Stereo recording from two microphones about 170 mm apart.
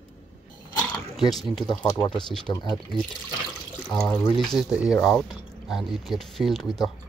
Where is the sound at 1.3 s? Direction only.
Centre (ahead or behind).